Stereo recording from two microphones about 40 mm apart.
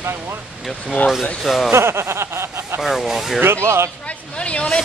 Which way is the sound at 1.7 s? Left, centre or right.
Right.